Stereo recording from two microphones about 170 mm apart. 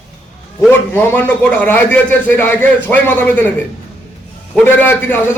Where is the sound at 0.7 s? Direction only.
10° left (ahead or behind).